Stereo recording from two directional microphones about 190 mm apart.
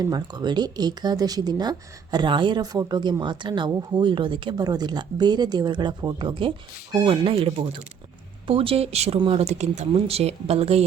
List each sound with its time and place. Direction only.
0.0 s speech: 20° right (ahead or behind)